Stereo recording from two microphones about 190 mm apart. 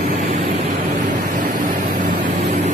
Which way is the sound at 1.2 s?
45° right (ahead or behind).